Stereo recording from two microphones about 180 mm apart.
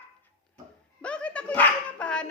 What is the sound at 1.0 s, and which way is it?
Speech, 5° left (ahead or behind).